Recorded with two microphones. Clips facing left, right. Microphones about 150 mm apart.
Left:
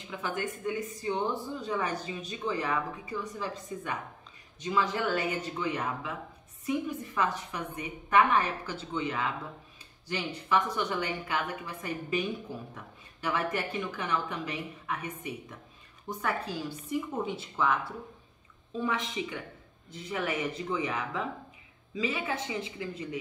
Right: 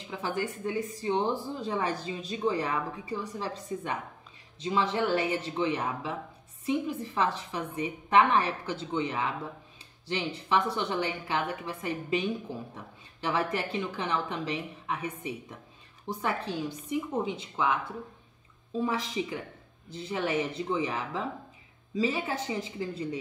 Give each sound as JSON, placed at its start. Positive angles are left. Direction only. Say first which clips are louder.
{"t": 0.2, "sound": "a woman's voice", "louder": "right 2 dB", "side_deg": -35}
{"t": 17.1, "sound": "speech", "louder": "right 2 dB", "side_deg": -15}
{"t": 18.8, "sound": "a woman's voice", "louder": "right 2 dB", "side_deg": -35}